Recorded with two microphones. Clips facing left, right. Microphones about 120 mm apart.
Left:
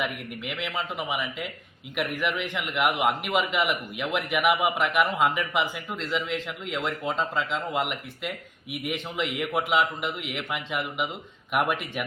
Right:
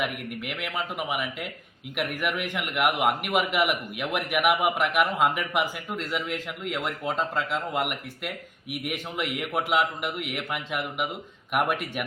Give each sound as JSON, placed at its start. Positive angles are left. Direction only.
{"t": 0.0, "sound": "a man's voice", "side_deg": -5}
{"t": 9.5, "sound": "a man's voice", "side_deg": 0}